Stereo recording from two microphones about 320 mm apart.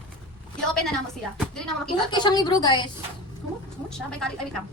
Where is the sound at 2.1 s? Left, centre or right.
Centre.